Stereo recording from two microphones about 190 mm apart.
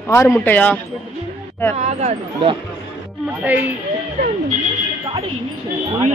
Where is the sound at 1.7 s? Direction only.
40° right (ahead or behind).